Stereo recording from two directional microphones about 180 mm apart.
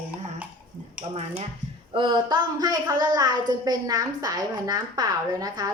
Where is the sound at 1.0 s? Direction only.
35° right (ahead or behind).